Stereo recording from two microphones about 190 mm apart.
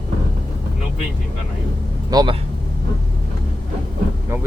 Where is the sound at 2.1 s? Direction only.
20° right (ahead or behind).